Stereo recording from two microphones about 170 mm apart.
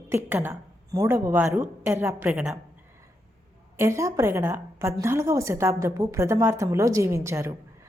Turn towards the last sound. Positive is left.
turn(degrees=-15)  # may be behind; listen again after turning